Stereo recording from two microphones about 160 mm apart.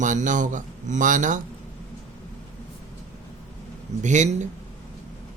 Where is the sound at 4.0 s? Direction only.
50° right (ahead or behind).